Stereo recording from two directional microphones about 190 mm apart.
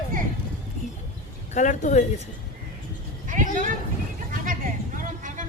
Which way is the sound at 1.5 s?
40° left (ahead or behind).